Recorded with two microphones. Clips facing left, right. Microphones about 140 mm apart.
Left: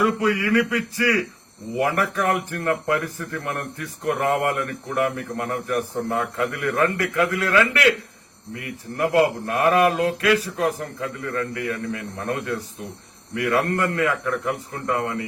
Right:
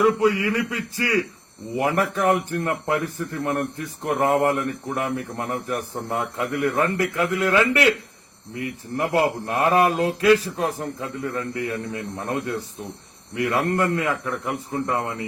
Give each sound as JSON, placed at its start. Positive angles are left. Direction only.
{"t": 0.0, "sound": "speech", "side_deg": -25}